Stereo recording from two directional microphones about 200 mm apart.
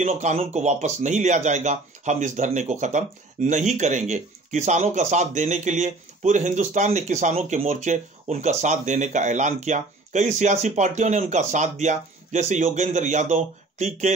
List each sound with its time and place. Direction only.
0.0 s speech: 35° right (ahead or behind)